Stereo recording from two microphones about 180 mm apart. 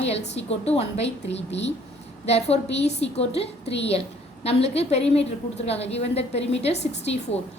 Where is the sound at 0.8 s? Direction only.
35° left (ahead or behind).